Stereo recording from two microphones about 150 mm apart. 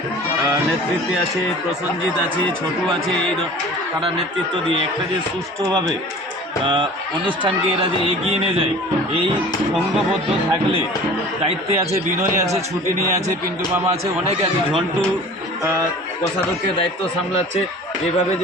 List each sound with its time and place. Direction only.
7.3 s speech: 35° right (ahead or behind)
11.4 s speech: 45° right (ahead or behind)